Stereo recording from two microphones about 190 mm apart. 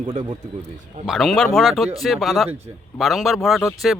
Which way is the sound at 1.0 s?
Centre (ahead or behind).